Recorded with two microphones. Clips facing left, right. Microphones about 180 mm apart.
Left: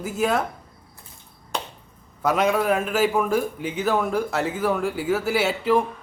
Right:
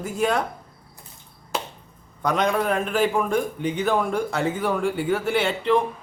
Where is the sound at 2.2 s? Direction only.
5° left (ahead or behind).